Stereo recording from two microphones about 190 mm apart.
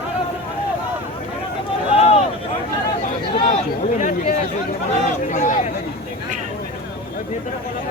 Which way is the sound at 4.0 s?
45° left (ahead or behind).